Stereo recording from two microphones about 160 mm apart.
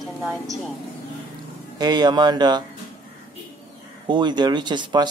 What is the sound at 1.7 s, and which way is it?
Speech, 25° right (ahead or behind).